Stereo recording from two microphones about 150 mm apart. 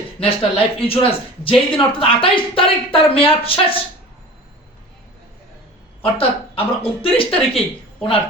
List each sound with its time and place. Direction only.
0.2 s speech: 40° left (ahead or behind)
6.0 s speech: 40° left (ahead or behind)